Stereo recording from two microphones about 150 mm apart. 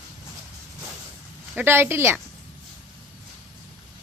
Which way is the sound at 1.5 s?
15° right (ahead or behind).